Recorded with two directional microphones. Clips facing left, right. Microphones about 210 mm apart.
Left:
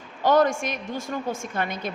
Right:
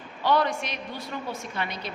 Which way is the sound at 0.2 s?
45° left (ahead or behind).